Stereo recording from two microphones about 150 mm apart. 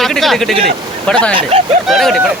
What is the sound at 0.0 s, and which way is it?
Speech, centre (ahead or behind).